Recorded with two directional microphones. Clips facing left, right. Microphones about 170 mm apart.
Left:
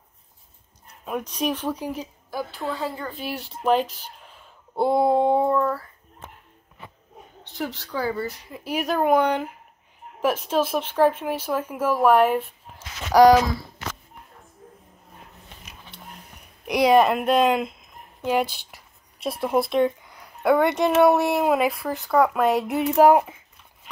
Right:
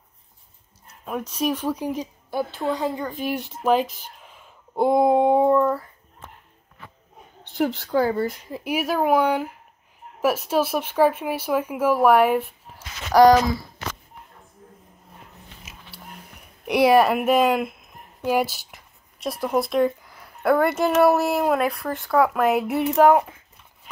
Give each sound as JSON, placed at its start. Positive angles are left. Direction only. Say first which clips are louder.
{"t": 1.0, "sound": "speech", "louder": "right 1 dB", "side_deg": 0}
{"t": 7.5, "sound": "speech", "louder": "right 8 dB", "side_deg": -55}
{"t": 8.6, "sound": "speech", "louder": "even", "side_deg": -10}
{"t": 13.1, "sound": "speech", "louder": "even", "side_deg": 10}
{"t": 16.6, "sound": "speech", "louder": "right 1 dB", "side_deg": -5}
{"t": 18.7, "sound": "a sound", "louder": "right 1 dB", "side_deg": 0}
{"t": 19.4, "sound": "speech", "louder": "even", "side_deg": 0}